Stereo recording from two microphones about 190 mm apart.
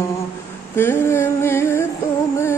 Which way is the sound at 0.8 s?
15° left (ahead or behind).